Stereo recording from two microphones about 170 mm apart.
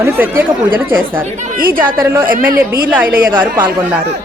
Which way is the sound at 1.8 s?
15° right (ahead or behind).